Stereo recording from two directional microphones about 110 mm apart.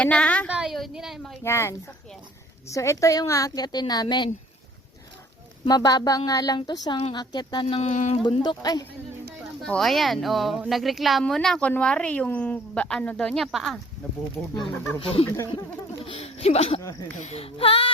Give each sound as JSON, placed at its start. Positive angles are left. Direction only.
{"t": 0.0, "sound": "a woman's voice", "side_deg": 10}
{"t": 0.4, "sound": "speech", "side_deg": -5}
{"t": 1.5, "sound": "a woman's voice", "side_deg": 25}
{"t": 5.6, "sound": "a woman's voice", "side_deg": 35}
{"t": 7.8, "sound": "speech", "side_deg": 90}
{"t": 8.4, "sound": "a woman's voice", "side_deg": 35}
{"t": 9.6, "sound": "a woman's voice", "side_deg": 5}
{"t": 15.0, "sound": "speech", "side_deg": 60}
{"t": 16.0, "sound": "speech", "side_deg": 70}
{"t": 17.2, "sound": "speech", "side_deg": 80}